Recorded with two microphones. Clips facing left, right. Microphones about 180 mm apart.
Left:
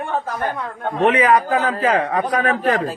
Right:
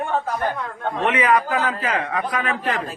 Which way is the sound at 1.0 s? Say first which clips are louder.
Left 4 dB; 35° left (ahead or behind).